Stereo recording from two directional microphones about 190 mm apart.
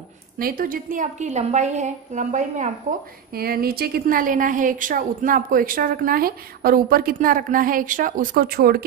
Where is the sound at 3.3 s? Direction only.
55° right (ahead or behind).